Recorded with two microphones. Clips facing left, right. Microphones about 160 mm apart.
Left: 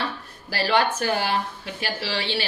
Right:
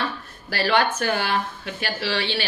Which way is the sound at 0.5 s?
30° left (ahead or behind).